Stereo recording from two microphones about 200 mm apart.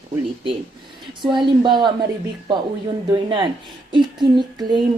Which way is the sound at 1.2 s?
25° right (ahead or behind).